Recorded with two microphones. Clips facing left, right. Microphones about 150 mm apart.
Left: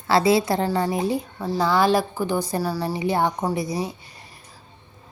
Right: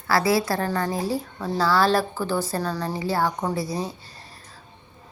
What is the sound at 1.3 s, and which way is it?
Speech, 5° left (ahead or behind).